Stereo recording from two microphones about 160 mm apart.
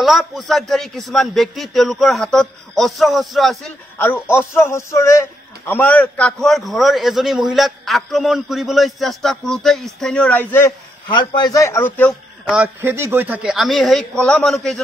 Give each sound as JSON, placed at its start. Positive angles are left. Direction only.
{"t": 0.0, "sound": "a man's voice", "side_deg": 0}
{"t": 4.0, "sound": "a man's voice", "side_deg": 15}
{"t": 11.1, "sound": "a man's voice", "side_deg": 30}
{"t": 12.4, "sound": "a man's voice", "side_deg": -10}